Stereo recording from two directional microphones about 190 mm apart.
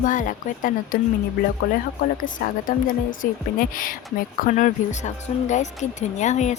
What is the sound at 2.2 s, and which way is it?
Speech, 45° left (ahead or behind).